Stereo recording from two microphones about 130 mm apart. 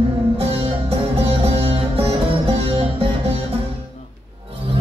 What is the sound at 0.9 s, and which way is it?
Music, 50° right (ahead or behind).